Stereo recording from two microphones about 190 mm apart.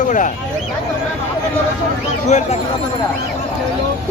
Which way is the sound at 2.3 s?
40° left (ahead or behind).